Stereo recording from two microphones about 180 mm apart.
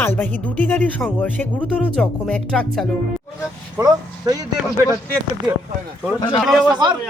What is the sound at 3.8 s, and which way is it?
Speech, 20° right (ahead or behind).